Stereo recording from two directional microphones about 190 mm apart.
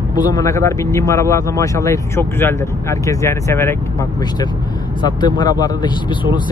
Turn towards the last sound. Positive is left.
turn(degrees=25)  # may be behind; listen again after turning